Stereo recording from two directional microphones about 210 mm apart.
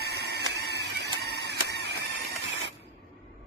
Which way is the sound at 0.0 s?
50° right (ahead or behind).